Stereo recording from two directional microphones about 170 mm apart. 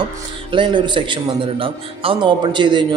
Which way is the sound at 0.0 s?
30° right (ahead or behind).